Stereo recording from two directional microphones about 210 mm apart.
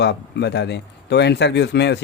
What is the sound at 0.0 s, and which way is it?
A man's voice, 55° left (ahead or behind).